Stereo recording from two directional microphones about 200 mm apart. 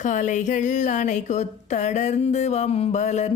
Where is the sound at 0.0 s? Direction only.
40° left (ahead or behind).